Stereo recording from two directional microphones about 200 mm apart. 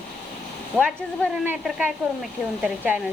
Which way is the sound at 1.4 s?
5° right (ahead or behind).